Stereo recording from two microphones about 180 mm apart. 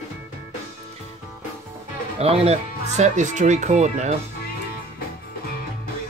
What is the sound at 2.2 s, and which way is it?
Speech, 35° right (ahead or behind).